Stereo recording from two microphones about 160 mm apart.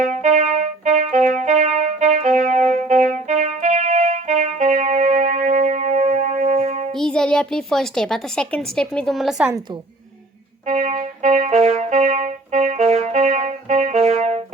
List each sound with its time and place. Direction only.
0.0 s music: 50° right (ahead or behind)
6.9 s speech: 5° left (ahead or behind)
10.7 s music: 50° right (ahead or behind)